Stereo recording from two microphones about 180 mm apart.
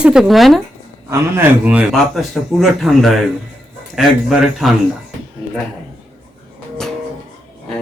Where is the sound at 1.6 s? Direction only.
5° right (ahead or behind).